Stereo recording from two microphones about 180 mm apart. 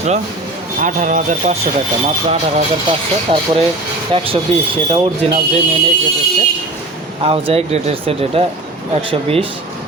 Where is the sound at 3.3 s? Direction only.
30° right (ahead or behind).